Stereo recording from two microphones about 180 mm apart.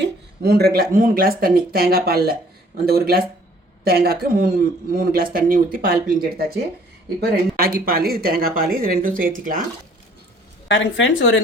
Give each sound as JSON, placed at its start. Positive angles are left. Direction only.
{"t": 0.0, "sound": "speech", "side_deg": -60}
{"t": 10.7, "sound": "a woman's voice", "side_deg": 90}